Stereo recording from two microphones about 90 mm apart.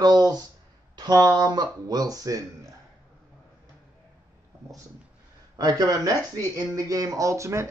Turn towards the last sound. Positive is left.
turn(degrees=-35)  # may be behind; listen again after turning